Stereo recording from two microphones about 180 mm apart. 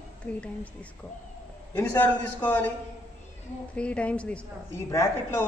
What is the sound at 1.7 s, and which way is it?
A woman's voice, 10° left (ahead or behind).